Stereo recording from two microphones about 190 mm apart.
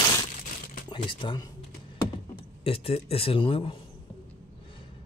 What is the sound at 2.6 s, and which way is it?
A man's voice, 30° left (ahead or behind).